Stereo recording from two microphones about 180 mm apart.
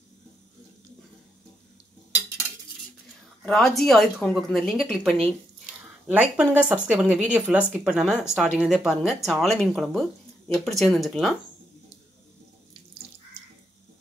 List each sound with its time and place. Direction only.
3.4 s a woman's voice: centre (ahead or behind)